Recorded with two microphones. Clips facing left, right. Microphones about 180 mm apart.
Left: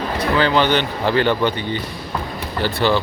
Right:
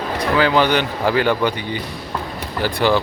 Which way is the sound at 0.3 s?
10° right (ahead or behind).